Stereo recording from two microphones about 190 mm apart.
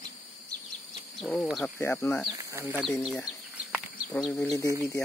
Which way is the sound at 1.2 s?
Centre (ahead or behind).